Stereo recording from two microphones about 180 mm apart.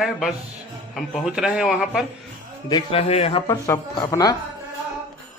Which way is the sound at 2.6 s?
30° left (ahead or behind).